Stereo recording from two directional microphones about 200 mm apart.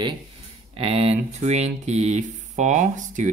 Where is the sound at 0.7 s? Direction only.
30° right (ahead or behind).